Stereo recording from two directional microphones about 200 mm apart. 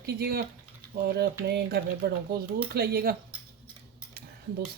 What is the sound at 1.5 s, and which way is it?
Speech, 55° right (ahead or behind).